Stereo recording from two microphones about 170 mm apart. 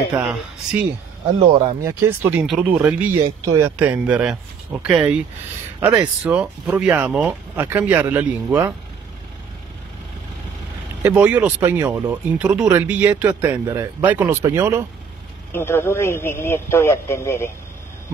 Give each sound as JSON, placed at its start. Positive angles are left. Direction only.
{"t": 0.1, "sound": "speech", "side_deg": -5}
{"t": 1.5, "sound": "speech", "side_deg": -30}
{"t": 1.8, "sound": "speech", "side_deg": -15}
{"t": 11.0, "sound": "speech", "side_deg": -10}
{"t": 15.5, "sound": "a man's voice", "side_deg": 15}